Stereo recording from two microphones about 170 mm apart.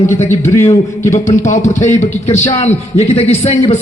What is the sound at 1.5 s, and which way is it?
A man's voice, 40° left (ahead or behind).